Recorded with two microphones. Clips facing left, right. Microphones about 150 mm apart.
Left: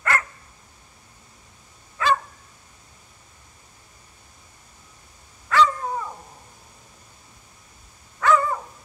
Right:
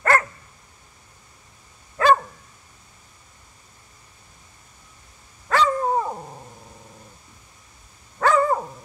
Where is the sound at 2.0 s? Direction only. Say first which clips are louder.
Right 5 dB; 45° right (ahead or behind).